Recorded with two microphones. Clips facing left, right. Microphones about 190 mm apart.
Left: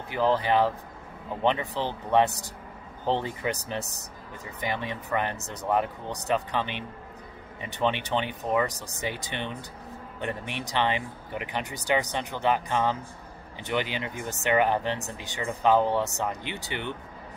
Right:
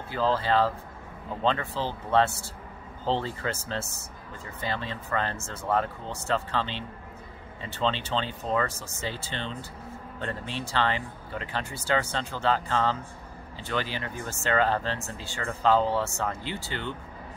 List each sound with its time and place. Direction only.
0.1 s speech: 15° left (ahead or behind)